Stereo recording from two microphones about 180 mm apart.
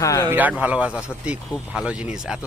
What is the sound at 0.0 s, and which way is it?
Speech, 20° left (ahead or behind).